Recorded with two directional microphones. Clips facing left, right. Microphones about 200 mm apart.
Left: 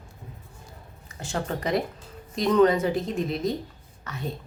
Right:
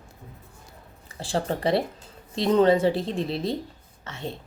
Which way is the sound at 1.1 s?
30° right (ahead or behind).